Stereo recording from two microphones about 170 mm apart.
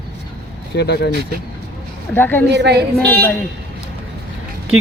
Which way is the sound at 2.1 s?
10° left (ahead or behind).